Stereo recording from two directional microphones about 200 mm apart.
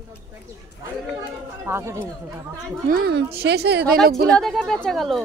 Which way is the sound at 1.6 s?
15° right (ahead or behind).